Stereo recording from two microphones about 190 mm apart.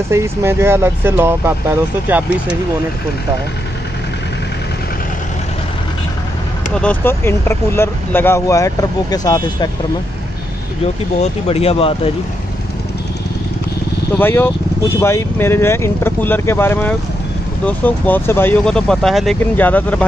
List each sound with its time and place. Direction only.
0.1 s speech: 15° right (ahead or behind)
6.7 s speech: 5° left (ahead or behind)
11.4 s speech: 30° left (ahead or behind)
14.1 s speech: 10° left (ahead or behind)